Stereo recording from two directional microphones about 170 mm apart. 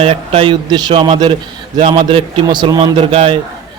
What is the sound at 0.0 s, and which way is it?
A man's voice, 35° right (ahead or behind).